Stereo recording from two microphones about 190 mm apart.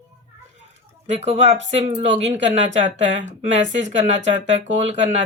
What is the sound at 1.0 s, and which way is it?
Speech, 35° right (ahead or behind).